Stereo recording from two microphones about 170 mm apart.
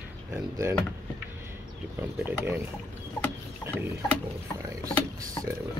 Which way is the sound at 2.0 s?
10° right (ahead or behind).